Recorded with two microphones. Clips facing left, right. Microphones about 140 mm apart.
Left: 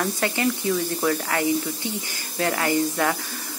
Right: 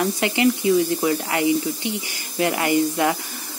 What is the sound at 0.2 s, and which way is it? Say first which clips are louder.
Speech: right 6 dB; 20° right (ahead or behind).